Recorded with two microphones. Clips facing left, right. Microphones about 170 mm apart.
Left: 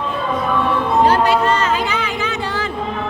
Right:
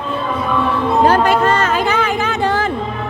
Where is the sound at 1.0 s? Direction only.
50° right (ahead or behind).